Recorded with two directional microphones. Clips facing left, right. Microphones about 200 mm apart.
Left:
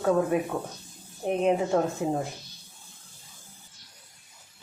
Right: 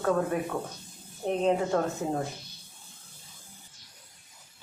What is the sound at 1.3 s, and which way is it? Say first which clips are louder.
Speech: left 2 dB; 15° left (ahead or behind).